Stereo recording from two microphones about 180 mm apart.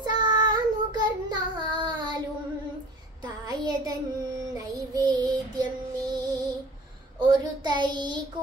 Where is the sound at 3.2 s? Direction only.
20° right (ahead or behind).